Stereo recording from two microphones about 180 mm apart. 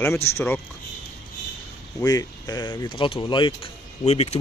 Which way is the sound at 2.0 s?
20° left (ahead or behind).